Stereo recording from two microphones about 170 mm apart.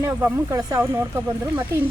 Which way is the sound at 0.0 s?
20° right (ahead or behind).